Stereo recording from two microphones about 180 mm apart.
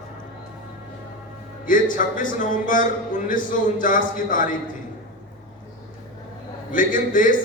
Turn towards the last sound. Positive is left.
turn(degrees=45)  # may be behind; listen again after turning